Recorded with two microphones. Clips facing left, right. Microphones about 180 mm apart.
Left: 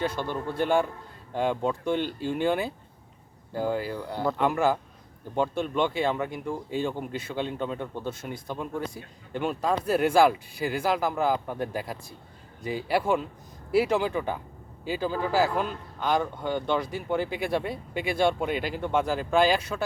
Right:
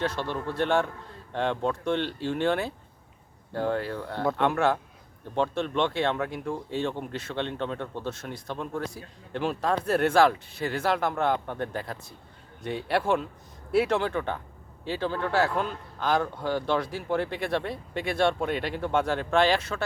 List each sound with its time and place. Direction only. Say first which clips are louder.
0.0 s speech: even; 5° left (ahead or behind)